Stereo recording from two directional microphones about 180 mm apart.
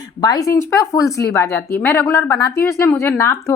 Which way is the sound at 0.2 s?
20° left (ahead or behind).